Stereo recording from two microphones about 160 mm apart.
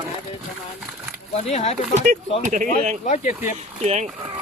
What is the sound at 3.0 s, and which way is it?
Speech, 50° left (ahead or behind).